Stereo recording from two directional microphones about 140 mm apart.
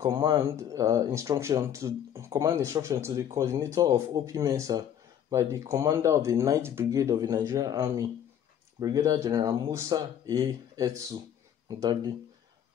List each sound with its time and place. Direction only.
0.1 s speech: 25° right (ahead or behind)